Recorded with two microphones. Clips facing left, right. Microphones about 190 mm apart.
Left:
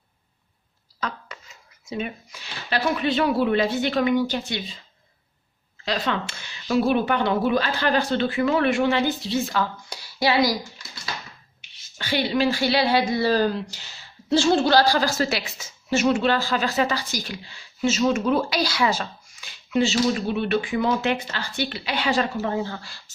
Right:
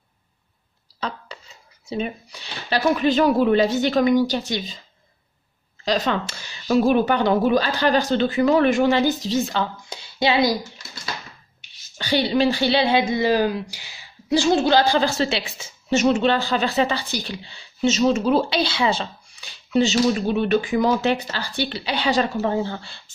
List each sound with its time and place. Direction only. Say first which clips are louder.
0.9 s speech: right 2 dB; 30° right (ahead or behind)
5.9 s speech: right 4 dB; 40° right (ahead or behind)
9.6 s speech: even; 25° right (ahead or behind)
12.0 s a woman's voice: right 3 dB; 30° right (ahead or behind)